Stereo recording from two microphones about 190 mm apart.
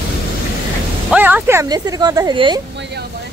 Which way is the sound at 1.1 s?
10° right (ahead or behind).